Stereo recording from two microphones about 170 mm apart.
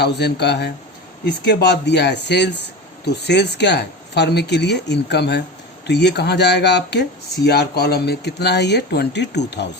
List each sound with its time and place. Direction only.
0.0 s speech: 80° left